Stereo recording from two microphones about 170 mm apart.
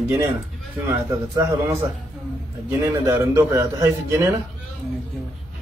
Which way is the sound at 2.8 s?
15° right (ahead or behind).